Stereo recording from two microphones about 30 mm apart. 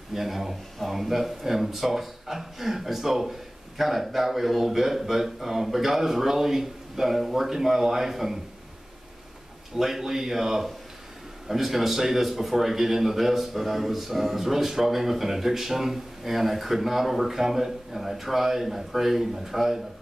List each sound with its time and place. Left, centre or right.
0.1 s speech: centre
9.8 s speech: centre